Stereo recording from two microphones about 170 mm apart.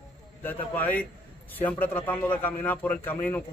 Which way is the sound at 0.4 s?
10° left (ahead or behind).